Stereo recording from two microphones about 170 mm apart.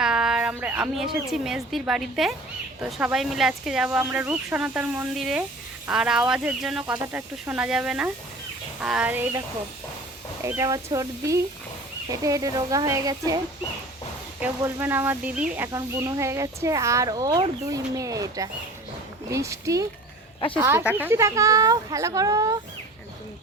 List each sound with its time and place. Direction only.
0.0 s a woman's voice: 5° right (ahead or behind)
10.4 s speech: 20° right (ahead or behind)
14.4 s speech: 10° right (ahead or behind)